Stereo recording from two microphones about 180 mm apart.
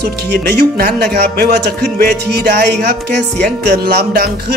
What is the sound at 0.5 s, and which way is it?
Speech, 60° right (ahead or behind).